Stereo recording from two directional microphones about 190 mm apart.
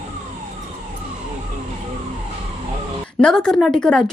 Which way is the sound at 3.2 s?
5° left (ahead or behind).